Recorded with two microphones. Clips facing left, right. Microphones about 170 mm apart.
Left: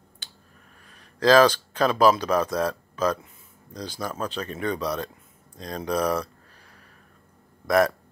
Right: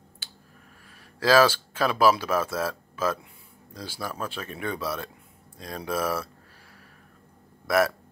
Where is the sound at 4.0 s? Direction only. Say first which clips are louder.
Left 3 dB; 20° left (ahead or behind).